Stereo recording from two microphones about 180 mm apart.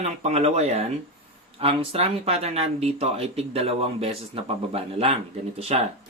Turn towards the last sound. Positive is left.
turn(degrees=-35)  # may be behind; listen again after turning